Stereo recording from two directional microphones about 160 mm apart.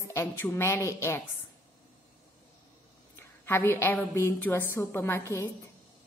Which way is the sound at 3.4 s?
15° left (ahead or behind).